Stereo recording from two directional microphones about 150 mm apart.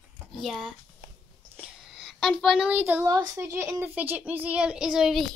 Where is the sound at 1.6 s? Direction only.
Centre (ahead or behind).